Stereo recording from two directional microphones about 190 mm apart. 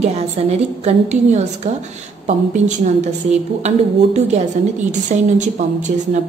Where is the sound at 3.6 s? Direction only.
35° right (ahead or behind).